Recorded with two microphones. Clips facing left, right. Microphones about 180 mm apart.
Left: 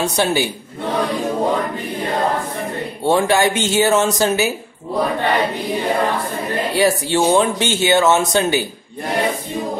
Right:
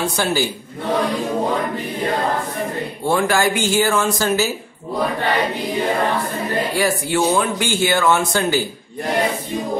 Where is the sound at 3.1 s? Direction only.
25° left (ahead or behind).